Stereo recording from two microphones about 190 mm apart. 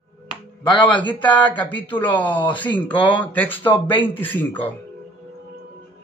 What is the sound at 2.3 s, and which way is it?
Speech, 25° left (ahead or behind).